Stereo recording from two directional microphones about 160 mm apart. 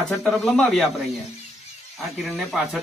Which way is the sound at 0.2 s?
5° left (ahead or behind).